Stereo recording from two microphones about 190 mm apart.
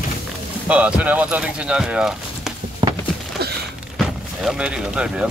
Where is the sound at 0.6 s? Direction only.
5° right (ahead or behind).